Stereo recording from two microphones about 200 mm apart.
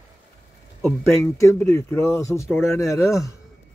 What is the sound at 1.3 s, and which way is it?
Speech, 15° left (ahead or behind).